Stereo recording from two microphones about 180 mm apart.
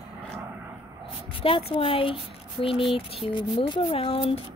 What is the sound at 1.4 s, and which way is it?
Speech, 30° left (ahead or behind).